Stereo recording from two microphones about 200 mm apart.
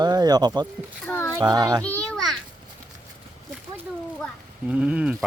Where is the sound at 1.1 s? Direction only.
10° left (ahead or behind).